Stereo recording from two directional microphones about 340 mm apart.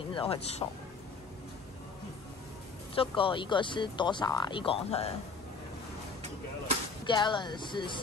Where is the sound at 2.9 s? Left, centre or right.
Centre.